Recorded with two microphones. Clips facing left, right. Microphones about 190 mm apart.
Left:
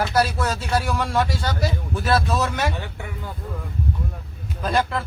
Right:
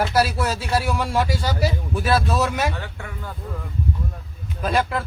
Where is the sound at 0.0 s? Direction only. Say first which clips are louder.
Right 1 dB; 5° right (ahead or behind).